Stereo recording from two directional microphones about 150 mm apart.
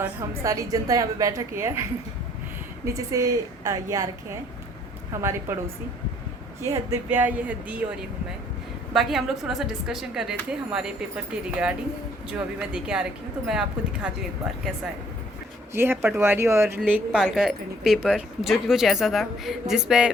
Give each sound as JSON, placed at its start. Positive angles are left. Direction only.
{"t": 0.0, "sound": "a woman's voice", "side_deg": -20}
{"t": 2.8, "sound": "a woman's voice", "side_deg": -20}
{"t": 5.1, "sound": "speech", "side_deg": -15}
{"t": 7.1, "sound": "speech", "side_deg": -10}
{"t": 8.9, "sound": "speech", "side_deg": 0}
{"t": 12.3, "sound": "speech", "side_deg": -5}
{"t": 15.7, "sound": "speech", "side_deg": -15}